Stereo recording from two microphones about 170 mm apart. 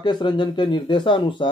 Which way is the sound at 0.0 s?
25° left (ahead or behind).